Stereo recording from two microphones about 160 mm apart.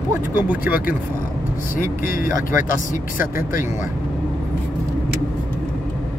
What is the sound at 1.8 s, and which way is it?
Speech, 60° left (ahead or behind).